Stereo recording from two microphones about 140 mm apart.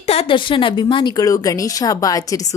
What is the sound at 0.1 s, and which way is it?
A woman's voice, 40° left (ahead or behind).